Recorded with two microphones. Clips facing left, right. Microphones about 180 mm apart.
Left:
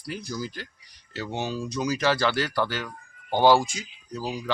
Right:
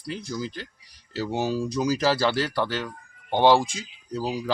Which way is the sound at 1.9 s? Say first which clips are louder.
Even; 30° right (ahead or behind).